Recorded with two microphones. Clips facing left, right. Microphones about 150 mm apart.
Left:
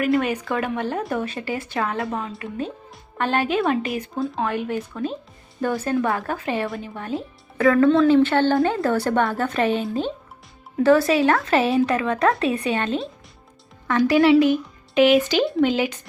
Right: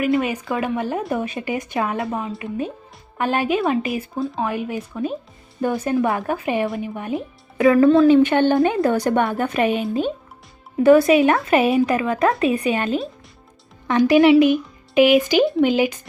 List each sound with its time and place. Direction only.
0.0 s speech: 5° right (ahead or behind)
7.8 s speech: 5° right (ahead or behind)
8.0 s speech: 15° right (ahead or behind)
10.8 s speech: 15° right (ahead or behind)
14.1 s speech: 15° right (ahead or behind)